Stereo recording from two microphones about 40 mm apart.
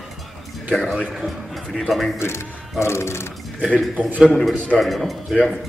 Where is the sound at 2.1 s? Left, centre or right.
Left.